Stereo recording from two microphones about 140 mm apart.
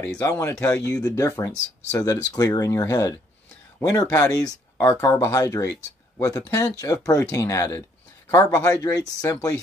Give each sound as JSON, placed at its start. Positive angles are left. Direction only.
{"t": 0.0, "sound": "speech", "side_deg": 15}